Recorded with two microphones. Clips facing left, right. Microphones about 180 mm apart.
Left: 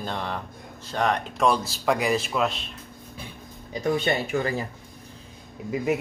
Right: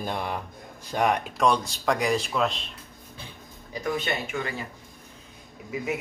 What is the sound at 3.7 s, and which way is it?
Speech, 30° left (ahead or behind).